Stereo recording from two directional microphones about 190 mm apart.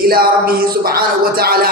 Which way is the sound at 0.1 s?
50° right (ahead or behind).